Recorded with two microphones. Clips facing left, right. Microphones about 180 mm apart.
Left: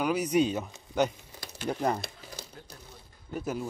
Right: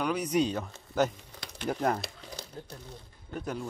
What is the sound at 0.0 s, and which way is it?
Speech, 5° left (ahead or behind).